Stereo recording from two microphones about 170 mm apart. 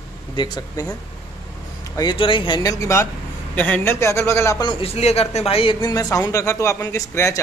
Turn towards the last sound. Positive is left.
turn(degrees=15)  # may be behind; listen again after turning